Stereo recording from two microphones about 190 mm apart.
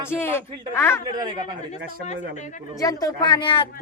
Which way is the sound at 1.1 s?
20° right (ahead or behind).